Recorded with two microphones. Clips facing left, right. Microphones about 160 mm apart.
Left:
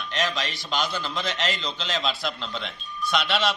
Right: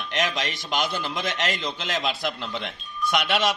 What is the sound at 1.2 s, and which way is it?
Speech, 55° right (ahead or behind).